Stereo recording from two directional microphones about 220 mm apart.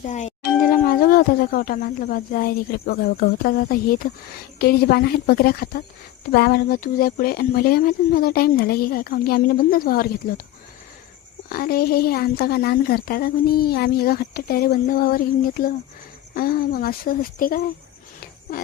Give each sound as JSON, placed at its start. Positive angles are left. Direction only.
{"t": 0.0, "sound": "speech", "side_deg": 30}
{"t": 11.4, "sound": "speech", "side_deg": 45}